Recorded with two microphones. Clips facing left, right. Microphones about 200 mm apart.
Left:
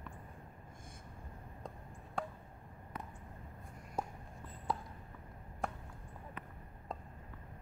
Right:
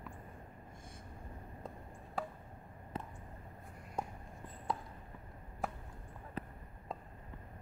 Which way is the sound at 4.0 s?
5° left (ahead or behind).